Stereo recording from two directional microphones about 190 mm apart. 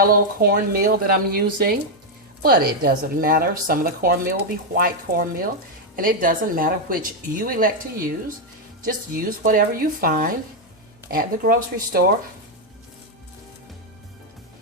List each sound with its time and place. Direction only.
0.0 s a woman's voice: 50° right (ahead or behind)